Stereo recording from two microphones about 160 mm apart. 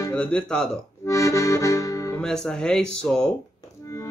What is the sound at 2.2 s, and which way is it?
Speech, 5° left (ahead or behind).